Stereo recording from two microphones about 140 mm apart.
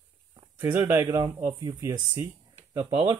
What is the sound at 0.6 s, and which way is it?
Speech, 15° right (ahead or behind).